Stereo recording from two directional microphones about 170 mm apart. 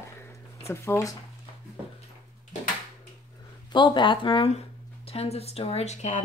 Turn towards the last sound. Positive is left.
turn(degrees=40)  # may be behind; listen again after turning